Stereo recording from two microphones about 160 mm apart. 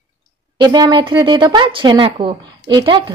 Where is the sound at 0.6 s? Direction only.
25° right (ahead or behind).